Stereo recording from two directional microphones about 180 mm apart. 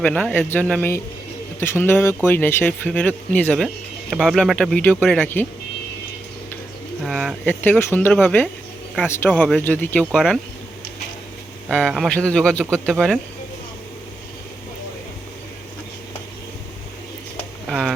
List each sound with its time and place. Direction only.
0.0 s speech: 5° left (ahead or behind)
7.0 s speech: centre (ahead or behind)
7.6 s speech: 10° left (ahead or behind)
9.3 s speech: centre (ahead or behind)
9.6 s speech: 10° left (ahead or behind)
11.7 s speech: centre (ahead or behind)
17.7 s a sound: centre (ahead or behind)